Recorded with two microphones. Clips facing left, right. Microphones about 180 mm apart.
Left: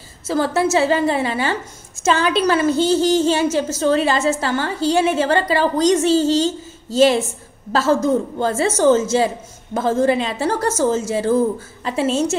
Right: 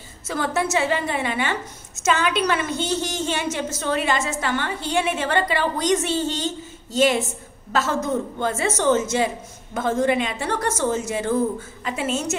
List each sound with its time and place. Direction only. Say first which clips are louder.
0.3 s a woman's voice: left 6 dB; 30° left (ahead or behind)